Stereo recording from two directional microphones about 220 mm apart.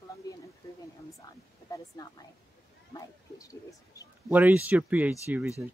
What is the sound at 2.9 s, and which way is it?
Speech, 15° left (ahead or behind).